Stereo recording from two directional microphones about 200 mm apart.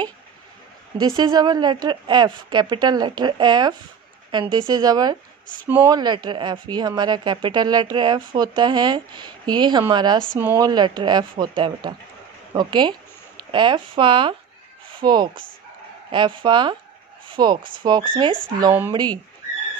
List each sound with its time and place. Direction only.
0.9 s speech: 20° right (ahead or behind)
18.7 s speech: 10° right (ahead or behind)